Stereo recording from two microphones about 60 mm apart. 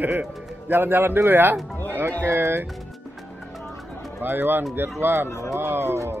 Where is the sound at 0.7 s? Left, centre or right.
Right.